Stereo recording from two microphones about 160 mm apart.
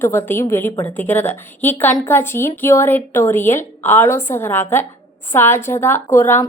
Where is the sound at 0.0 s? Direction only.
15° left (ahead or behind).